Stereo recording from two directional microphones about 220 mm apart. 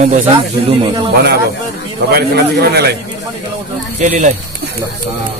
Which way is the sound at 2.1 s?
45° right (ahead or behind).